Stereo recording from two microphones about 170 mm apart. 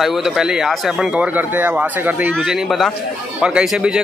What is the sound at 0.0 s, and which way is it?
Speech, centre (ahead or behind).